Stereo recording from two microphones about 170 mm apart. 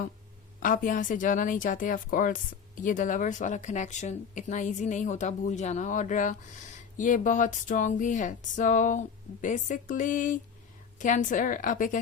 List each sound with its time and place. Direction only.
0.6 s a woman's voice: 55° left (ahead or behind)